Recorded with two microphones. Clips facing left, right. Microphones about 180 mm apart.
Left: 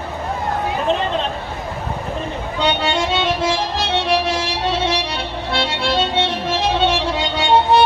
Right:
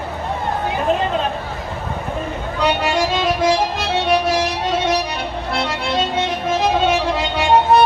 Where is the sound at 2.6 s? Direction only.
30° left (ahead or behind).